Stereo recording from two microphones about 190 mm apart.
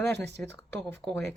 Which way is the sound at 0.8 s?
Centre (ahead or behind).